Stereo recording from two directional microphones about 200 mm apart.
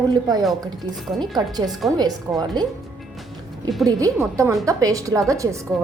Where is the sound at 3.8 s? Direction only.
15° right (ahead or behind).